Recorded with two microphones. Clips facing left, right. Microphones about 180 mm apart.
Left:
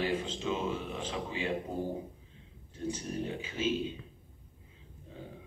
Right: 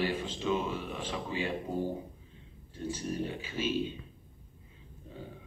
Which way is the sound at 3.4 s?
20° left (ahead or behind).